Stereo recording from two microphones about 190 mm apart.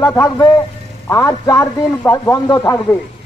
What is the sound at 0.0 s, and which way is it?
A man's voice, 15° left (ahead or behind).